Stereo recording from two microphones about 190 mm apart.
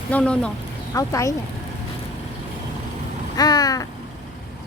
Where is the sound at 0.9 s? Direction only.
15° left (ahead or behind).